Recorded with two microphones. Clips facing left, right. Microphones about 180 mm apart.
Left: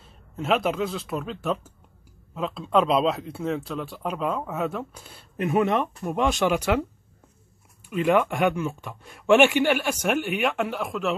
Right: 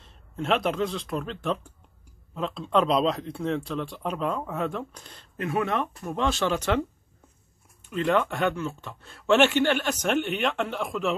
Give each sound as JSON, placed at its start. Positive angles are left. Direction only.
{"t": 0.0, "sound": "speech", "side_deg": 5}
{"t": 5.4, "sound": "speech", "side_deg": 20}
{"t": 7.9, "sound": "speech", "side_deg": 10}